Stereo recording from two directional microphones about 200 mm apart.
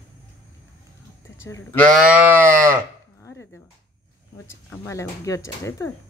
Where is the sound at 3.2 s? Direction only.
15° left (ahead or behind).